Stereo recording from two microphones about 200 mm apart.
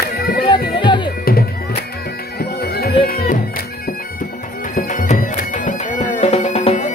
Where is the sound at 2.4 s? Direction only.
50° left (ahead or behind).